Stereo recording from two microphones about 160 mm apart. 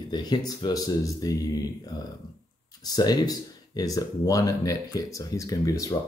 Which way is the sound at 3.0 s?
25° left (ahead or behind).